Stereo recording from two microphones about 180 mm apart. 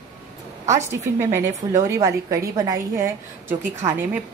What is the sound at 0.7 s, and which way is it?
A woman's voice, 15° right (ahead or behind).